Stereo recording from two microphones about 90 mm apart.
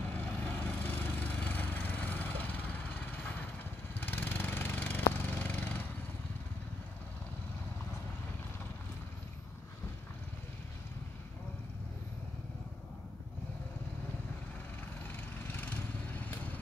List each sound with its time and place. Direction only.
0.1 s lawn mower: 15° left (ahead or behind)
15.0 s vehicle: 20° left (ahead or behind)